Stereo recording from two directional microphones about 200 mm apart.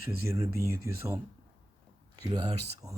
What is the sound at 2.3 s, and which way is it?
Speech, 20° right (ahead or behind).